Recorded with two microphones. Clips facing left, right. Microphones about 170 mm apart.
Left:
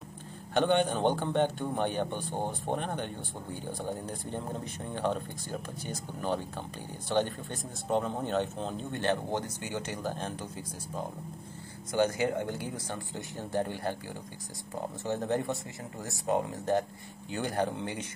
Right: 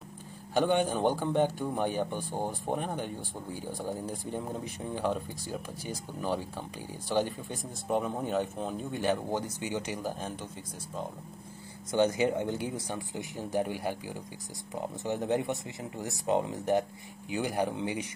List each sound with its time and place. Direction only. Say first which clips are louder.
0.6 s speech: even; 5° right (ahead or behind)
10.1 s speech: left 1 dB; 5° right (ahead or behind)
11.9 s speech: right 2 dB; 20° right (ahead or behind)